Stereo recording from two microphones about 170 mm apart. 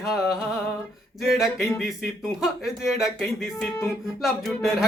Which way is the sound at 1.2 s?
Centre (ahead or behind).